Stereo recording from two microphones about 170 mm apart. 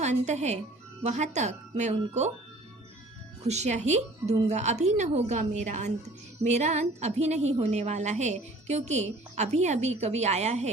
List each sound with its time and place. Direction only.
0.0 s a woman's voice: 40° right (ahead or behind)
3.4 s a woman's voice: 40° right (ahead or behind)